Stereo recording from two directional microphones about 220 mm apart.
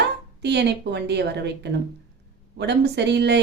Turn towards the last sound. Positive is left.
turn(degrees=-50)  # may be behind; listen again after turning